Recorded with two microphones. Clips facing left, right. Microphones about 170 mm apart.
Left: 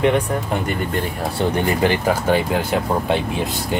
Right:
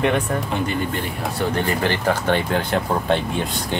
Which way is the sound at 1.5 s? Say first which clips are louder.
Left 4 dB; 15° left (ahead or behind).